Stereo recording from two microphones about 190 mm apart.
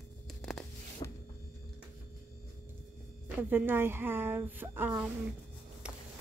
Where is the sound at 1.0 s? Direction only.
25° left (ahead or behind).